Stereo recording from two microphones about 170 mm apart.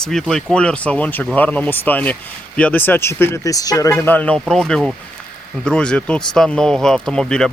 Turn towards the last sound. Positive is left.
turn(degrees=5)  # may be behind; listen again after turning